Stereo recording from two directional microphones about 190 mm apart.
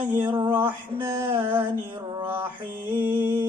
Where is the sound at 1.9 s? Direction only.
25° right (ahead or behind).